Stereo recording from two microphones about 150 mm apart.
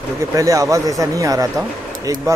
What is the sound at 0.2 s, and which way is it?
Speech, 20° right (ahead or behind).